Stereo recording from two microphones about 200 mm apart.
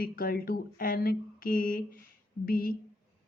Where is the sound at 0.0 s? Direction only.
45° left (ahead or behind).